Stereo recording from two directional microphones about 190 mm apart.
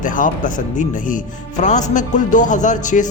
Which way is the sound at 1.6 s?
40° left (ahead or behind).